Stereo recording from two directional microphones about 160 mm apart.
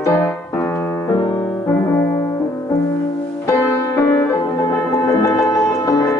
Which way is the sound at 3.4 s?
20° left (ahead or behind).